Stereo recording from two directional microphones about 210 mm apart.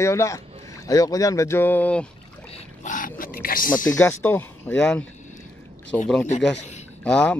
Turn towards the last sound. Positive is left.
turn(degrees=5)  # may be behind; listen again after turning